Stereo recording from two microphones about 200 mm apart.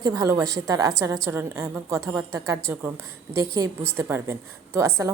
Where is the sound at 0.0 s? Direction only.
15° right (ahead or behind).